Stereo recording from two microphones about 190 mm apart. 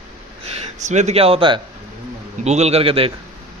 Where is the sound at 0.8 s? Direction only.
35° right (ahead or behind).